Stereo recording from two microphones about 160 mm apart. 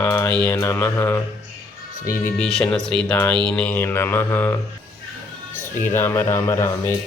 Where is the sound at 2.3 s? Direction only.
5° left (ahead or behind).